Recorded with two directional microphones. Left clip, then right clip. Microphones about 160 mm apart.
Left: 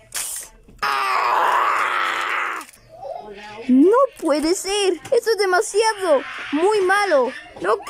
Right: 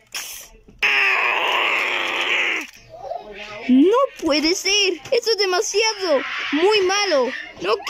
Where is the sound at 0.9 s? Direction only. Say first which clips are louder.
Even; 15° right (ahead or behind).